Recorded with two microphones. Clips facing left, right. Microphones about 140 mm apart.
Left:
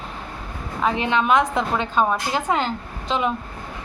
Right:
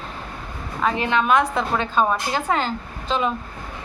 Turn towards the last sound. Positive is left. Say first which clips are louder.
# even
turn(degrees=15)  # may be behind; listen again after turning